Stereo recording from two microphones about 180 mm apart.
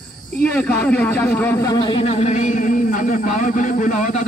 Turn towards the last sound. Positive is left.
turn(degrees=45)  # may be behind; listen again after turning